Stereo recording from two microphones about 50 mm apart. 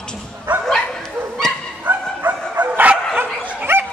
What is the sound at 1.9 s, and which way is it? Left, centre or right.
Bow-wow, right.